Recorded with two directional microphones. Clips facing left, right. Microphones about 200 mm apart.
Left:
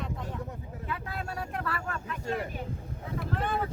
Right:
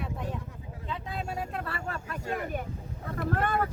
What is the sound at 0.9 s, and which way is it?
Vehicle, 20° right (ahead or behind).